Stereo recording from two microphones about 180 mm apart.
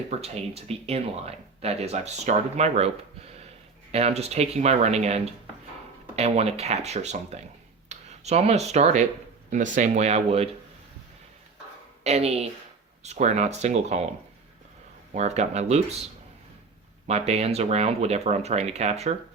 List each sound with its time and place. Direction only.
0.1 s speech: 35° right (ahead or behind)
3.9 s speech: 35° right (ahead or behind)
12.0 s speech: 35° right (ahead or behind)
15.1 s speech: 40° right (ahead or behind)
17.1 s speech: 35° right (ahead or behind)